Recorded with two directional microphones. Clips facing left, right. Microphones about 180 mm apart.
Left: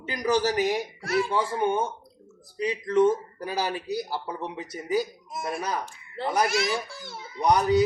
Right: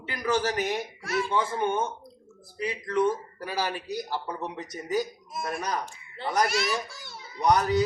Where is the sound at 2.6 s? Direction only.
20° left (ahead or behind).